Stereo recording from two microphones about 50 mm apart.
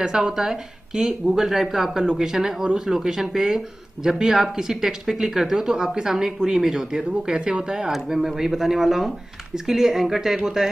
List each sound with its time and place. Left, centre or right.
0.0 s speech: centre
7.9 s speech: centre